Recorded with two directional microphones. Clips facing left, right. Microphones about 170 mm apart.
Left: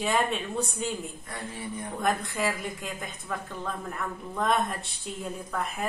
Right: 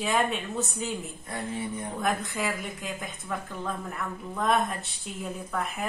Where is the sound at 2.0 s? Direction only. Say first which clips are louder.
Left 2 dB; centre (ahead or behind).